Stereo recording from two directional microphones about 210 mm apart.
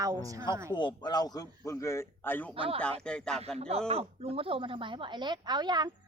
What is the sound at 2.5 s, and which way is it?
Speech, 25° right (ahead or behind).